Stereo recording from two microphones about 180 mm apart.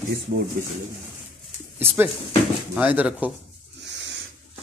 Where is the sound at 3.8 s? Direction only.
80° right.